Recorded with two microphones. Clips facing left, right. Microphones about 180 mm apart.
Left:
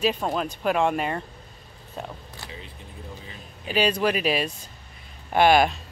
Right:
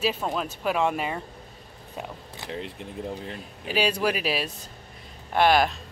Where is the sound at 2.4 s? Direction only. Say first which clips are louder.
Right 10 dB; 70° right (ahead or behind).